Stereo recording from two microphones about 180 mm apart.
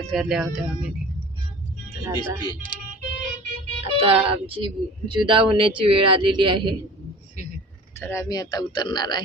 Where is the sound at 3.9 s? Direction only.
30° right (ahead or behind).